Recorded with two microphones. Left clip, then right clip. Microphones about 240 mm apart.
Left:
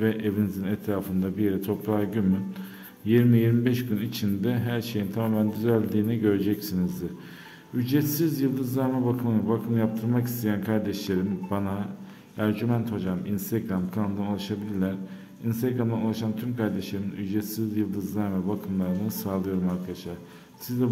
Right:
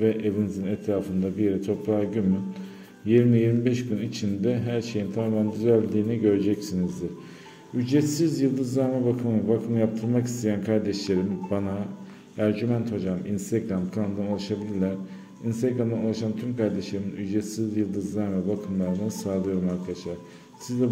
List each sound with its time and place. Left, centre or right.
0.0 s a man's voice: centre
7.8 s a man's voice: centre